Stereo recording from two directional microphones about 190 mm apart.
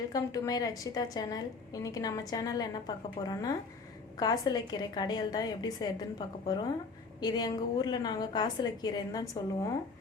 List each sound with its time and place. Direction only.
0.1 s a woman's voice: 20° left (ahead or behind)